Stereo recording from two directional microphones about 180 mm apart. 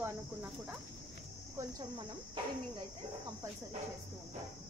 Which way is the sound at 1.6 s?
20° right (ahead or behind).